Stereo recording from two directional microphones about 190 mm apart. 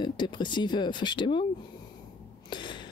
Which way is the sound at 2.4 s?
25° left (ahead or behind).